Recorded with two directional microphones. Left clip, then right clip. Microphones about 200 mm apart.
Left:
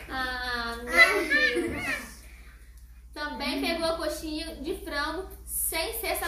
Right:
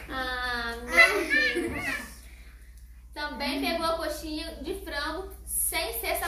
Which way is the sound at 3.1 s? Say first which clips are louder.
Even; centre (ahead or behind).